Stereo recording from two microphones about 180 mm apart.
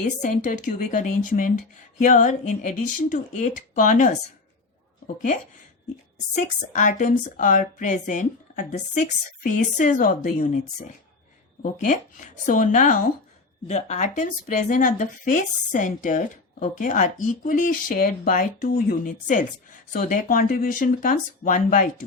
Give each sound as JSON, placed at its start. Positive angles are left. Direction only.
{"t": 0.0, "sound": "speech", "side_deg": 45}
{"t": 6.3, "sound": "speech", "side_deg": 45}